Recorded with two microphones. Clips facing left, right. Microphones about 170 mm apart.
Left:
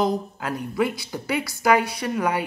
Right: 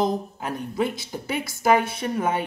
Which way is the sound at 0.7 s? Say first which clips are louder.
Left 2 dB; 20° right (ahead or behind).